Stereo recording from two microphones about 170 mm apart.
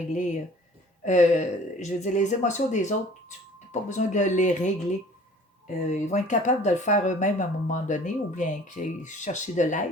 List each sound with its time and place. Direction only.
1.0 s speech: 45° left (ahead or behind)